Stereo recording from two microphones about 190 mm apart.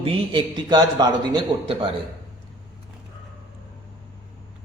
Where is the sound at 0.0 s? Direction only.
25° right (ahead or behind).